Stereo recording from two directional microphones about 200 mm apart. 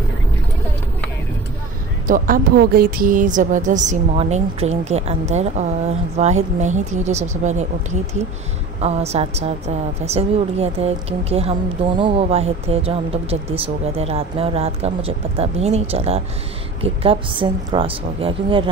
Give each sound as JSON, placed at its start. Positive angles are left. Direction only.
{"t": 2.0, "sound": "speech", "side_deg": -45}